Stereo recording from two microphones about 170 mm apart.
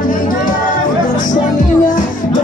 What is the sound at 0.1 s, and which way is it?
Music, 55° left (ahead or behind).